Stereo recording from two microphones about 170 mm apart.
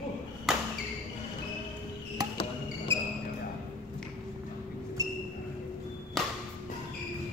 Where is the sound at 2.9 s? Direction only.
30° right (ahead or behind).